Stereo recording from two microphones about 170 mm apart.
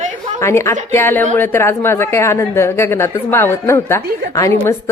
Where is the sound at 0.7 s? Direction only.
45° right (ahead or behind).